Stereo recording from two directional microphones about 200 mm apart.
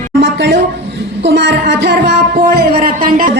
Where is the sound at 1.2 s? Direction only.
60° right (ahead or behind).